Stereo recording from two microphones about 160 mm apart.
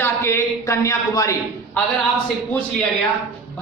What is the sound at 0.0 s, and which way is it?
A man's voice, 15° left (ahead or behind).